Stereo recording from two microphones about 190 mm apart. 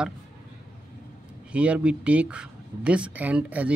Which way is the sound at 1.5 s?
5° right (ahead or behind).